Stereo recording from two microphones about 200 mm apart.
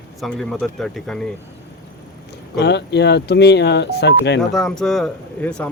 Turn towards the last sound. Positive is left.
turn(degrees=5)  # may be behind; listen again after turning